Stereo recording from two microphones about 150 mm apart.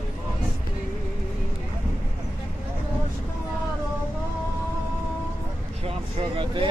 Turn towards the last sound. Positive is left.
turn(degrees=-35)  # may be behind; listen again after turning